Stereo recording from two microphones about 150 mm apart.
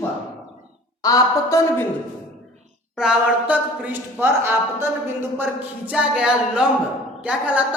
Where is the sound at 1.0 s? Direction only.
25° left (ahead or behind).